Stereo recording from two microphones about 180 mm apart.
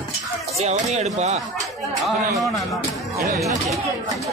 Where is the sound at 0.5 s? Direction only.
40° right (ahead or behind).